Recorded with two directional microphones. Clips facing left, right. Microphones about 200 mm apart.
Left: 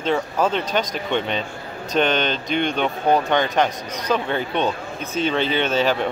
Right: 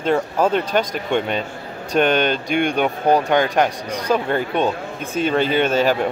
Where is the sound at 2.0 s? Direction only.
50° right (ahead or behind).